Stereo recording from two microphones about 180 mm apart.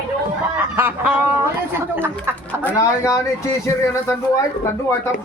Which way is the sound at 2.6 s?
15° left (ahead or behind).